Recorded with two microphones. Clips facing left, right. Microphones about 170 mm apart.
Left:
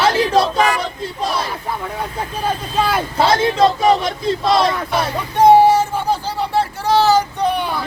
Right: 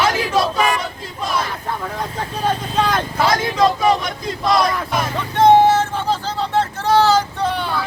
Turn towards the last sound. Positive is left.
turn(degrees=15)  # may be behind; listen again after turning